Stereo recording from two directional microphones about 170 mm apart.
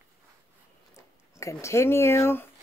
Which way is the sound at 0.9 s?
15° left (ahead or behind).